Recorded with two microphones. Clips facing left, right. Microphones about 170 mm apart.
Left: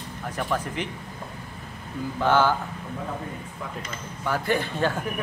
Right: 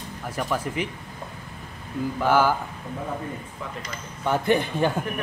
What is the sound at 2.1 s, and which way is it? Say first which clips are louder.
Speech: even; 10° right (ahead or behind).